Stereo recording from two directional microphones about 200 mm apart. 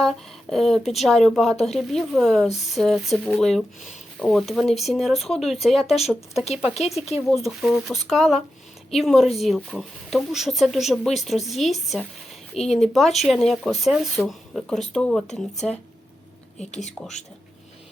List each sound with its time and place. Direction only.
0.0 s speech: centre (ahead or behind)
7.3 s speech: centre (ahead or behind)
16.8 s speech: 35° left (ahead or behind)